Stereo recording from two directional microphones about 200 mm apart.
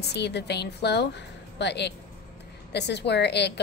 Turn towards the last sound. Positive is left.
turn(degrees=55)  # may be behind; listen again after turning